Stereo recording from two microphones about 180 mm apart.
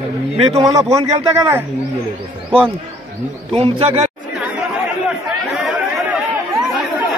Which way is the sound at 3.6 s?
30° right (ahead or behind).